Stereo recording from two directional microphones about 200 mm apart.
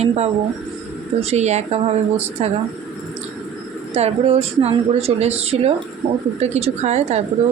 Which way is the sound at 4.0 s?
30° right (ahead or behind).